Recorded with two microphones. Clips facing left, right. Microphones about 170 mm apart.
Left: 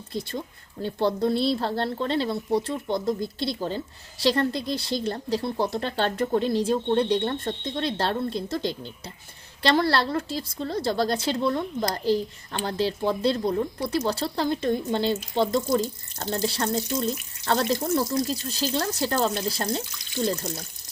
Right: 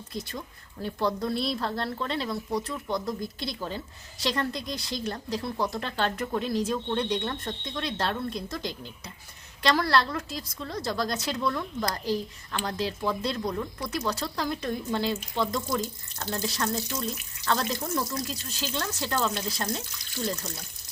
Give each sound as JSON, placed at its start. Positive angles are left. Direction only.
{"t": 0.1, "sound": "a woman's voice", "side_deg": 30}